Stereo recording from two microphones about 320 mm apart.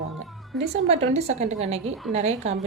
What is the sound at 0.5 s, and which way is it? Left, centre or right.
Speech, centre.